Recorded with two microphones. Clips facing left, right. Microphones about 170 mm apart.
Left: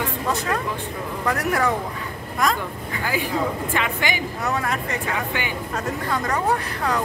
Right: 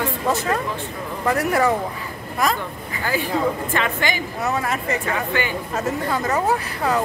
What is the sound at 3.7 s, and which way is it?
Speech, 10° left (ahead or behind).